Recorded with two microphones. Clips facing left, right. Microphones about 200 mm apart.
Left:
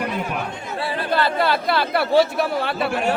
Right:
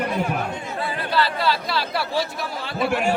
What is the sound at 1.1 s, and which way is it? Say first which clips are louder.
A man's voice: left 2 dB; 50° left (ahead or behind).